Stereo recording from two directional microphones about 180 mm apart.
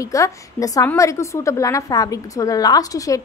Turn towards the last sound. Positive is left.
turn(degrees=20)  # may be behind; listen again after turning